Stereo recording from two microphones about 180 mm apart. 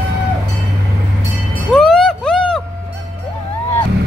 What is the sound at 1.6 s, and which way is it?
Music, 5° left (ahead or behind).